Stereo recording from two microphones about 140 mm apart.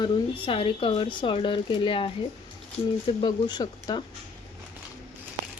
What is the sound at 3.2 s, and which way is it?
Speech, 30° left (ahead or behind).